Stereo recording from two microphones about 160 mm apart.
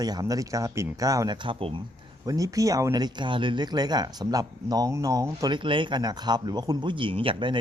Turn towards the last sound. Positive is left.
turn(degrees=-30)  # may be behind; listen again after turning